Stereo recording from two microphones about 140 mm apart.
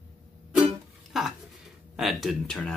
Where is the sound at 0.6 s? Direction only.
5° right (ahead or behind).